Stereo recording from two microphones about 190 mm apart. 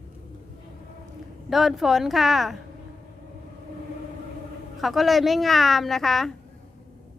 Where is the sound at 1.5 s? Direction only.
Centre (ahead or behind).